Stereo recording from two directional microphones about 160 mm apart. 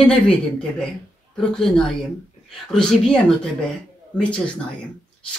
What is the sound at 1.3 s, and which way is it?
Speech, 5° left (ahead or behind).